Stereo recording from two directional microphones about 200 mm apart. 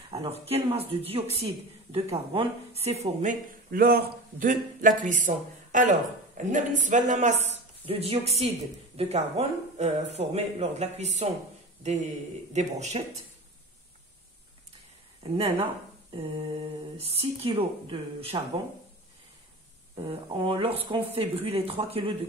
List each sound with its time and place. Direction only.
0.1 s speech: 30° right (ahead or behind)
15.2 s speech: 30° right (ahead or behind)
20.0 s speech: 25° right (ahead or behind)